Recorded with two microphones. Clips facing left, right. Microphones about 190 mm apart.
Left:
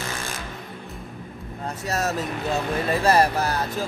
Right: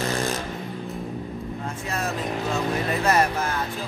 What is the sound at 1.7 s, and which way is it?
Speech, 40° left (ahead or behind).